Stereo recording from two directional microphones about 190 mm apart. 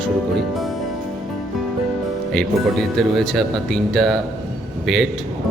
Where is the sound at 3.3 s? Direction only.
Centre (ahead or behind).